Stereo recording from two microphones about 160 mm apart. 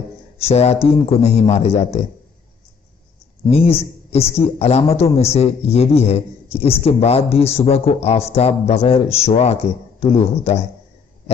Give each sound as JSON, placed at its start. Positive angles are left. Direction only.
{"t": 0.4, "sound": "a man's voice", "side_deg": 40}
{"t": 3.5, "sound": "a man's voice", "side_deg": 40}